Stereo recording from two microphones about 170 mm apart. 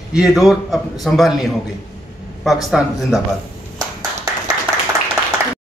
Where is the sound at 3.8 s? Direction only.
20° right (ahead or behind).